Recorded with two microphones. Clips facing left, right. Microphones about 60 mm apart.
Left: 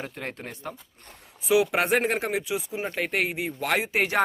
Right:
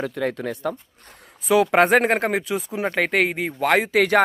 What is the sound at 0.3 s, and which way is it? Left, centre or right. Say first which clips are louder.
Speech: right 10 dB; right.